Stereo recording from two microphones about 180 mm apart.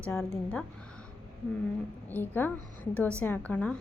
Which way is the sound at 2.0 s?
10° left (ahead or behind).